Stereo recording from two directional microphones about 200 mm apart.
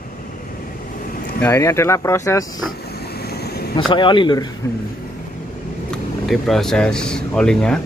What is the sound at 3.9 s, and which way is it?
Speech, 25° left (ahead or behind).